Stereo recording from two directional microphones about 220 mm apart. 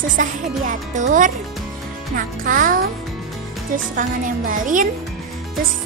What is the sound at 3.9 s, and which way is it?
Speech, 35° right (ahead or behind).